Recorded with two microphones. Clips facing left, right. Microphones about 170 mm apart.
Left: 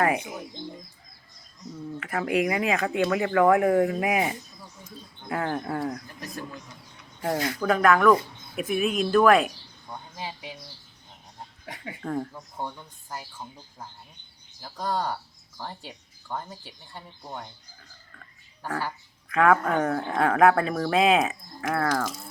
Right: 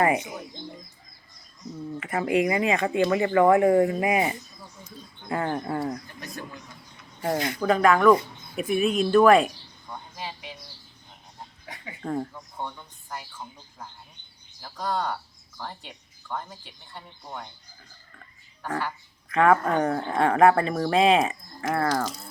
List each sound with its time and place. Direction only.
2.0 s speech: centre (ahead or behind)
7.6 s speech: centre (ahead or behind)
12.0 s speech: 5° right (ahead or behind)
12.3 s speech: 10° left (ahead or behind)
14.6 s speech: 20° left (ahead or behind)
18.6 s speech: 5° left (ahead or behind)